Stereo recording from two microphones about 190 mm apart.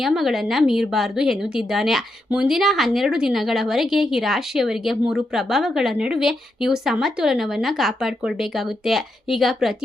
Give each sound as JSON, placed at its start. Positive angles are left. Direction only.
{"t": 0.0, "sound": "speech", "side_deg": 0}